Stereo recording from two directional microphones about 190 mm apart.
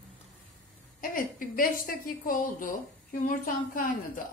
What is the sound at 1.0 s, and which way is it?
A woman's voice, 45° left (ahead or behind).